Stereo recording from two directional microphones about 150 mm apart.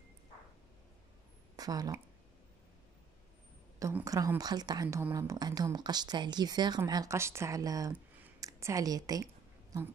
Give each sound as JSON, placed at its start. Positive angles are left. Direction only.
{"t": 1.6, "sound": "speech", "side_deg": -25}
{"t": 3.8, "sound": "speech", "side_deg": -20}
{"t": 4.8, "sound": "speech", "side_deg": -10}
{"t": 5.1, "sound": "speech", "side_deg": -25}
{"t": 8.4, "sound": "a sound", "side_deg": -20}